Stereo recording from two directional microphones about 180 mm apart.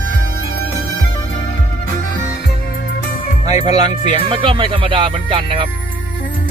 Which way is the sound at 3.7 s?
25° right (ahead or behind).